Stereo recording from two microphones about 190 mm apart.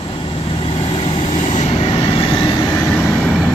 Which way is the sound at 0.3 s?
30° left (ahead or behind).